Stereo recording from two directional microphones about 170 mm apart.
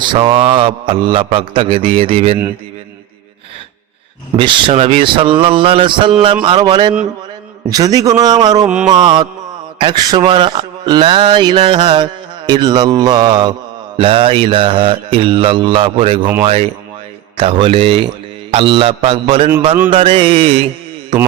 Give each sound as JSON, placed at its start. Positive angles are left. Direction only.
{"t": 0.0, "sound": "a man's voice", "side_deg": -30}
{"t": 4.4, "sound": "a man's voice", "side_deg": -30}
{"t": 8.6, "sound": "a sound", "side_deg": -5}
{"t": 8.9, "sound": "a man's voice", "side_deg": -25}